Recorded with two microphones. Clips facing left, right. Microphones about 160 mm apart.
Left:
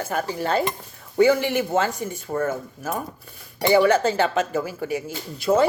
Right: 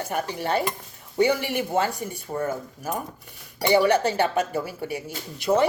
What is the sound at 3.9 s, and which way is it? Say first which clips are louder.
Speech: left 2 dB; 15° right (ahead or behind).